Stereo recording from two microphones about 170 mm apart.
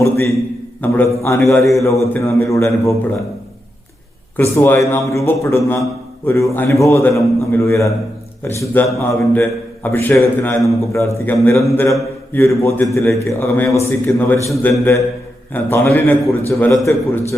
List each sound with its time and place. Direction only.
0.0 s a man's voice: 15° left (ahead or behind)
4.4 s a man's voice: 15° left (ahead or behind)